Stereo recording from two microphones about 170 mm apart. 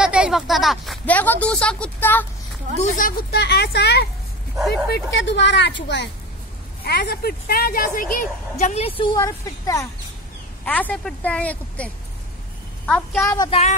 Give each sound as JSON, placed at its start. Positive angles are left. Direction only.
{"t": 0.0, "sound": "speech", "side_deg": -5}
{"t": 2.8, "sound": "speech", "side_deg": 55}
{"t": 4.9, "sound": "a woman's voice", "side_deg": 90}
{"t": 6.8, "sound": "speech", "side_deg": 70}
{"t": 10.6, "sound": "a woman's voice", "side_deg": 10}
{"t": 13.2, "sound": "speech", "side_deg": 15}
{"t": 13.5, "sound": "speech", "side_deg": 40}